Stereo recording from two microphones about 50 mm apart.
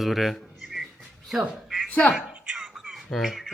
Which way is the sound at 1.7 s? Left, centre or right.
Centre.